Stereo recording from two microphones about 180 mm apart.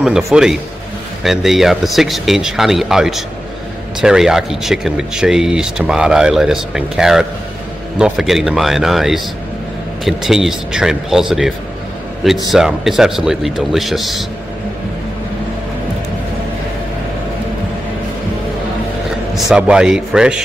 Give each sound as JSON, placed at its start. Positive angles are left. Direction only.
{"t": 0.0, "sound": "speech", "side_deg": -5}
{"t": 19.3, "sound": "speech", "side_deg": -5}